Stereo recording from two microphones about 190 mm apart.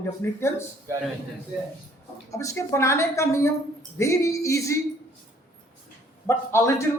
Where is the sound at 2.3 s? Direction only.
15° left (ahead or behind).